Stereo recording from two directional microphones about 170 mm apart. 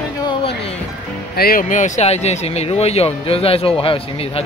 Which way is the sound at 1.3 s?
60° left (ahead or behind).